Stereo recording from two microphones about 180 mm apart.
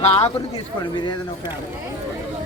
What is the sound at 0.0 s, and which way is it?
Speech, 35° left (ahead or behind).